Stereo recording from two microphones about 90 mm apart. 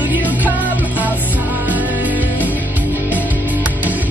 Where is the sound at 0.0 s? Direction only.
20° right (ahead or behind).